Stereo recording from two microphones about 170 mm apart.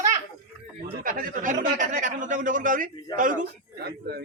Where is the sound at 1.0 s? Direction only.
55° right (ahead or behind).